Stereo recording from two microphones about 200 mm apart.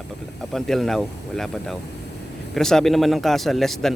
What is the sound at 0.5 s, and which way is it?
A man's voice, centre (ahead or behind).